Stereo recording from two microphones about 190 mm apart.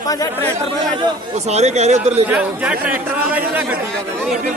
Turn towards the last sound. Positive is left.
turn(degrees=-10)  # may be behind; listen again after turning